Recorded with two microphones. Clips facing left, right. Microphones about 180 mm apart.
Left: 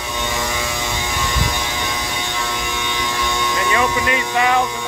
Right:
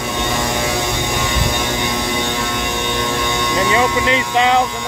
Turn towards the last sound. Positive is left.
turn(degrees=-20)  # may be behind; listen again after turning